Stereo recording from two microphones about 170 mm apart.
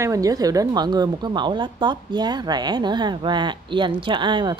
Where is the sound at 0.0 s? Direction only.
20° right (ahead or behind).